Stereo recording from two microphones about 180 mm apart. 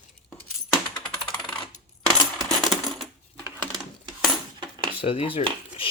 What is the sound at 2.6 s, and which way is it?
Coin, centre (ahead or behind).